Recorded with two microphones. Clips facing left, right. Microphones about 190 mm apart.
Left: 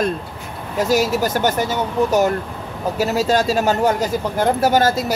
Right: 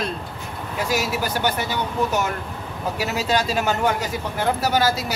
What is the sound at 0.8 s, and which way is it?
Speech, 40° left (ahead or behind).